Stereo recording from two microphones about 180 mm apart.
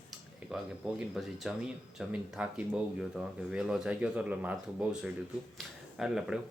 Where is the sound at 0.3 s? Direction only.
5° right (ahead or behind).